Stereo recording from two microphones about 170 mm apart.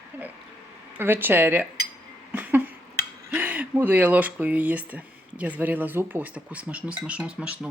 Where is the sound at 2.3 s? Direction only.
10° right (ahead or behind).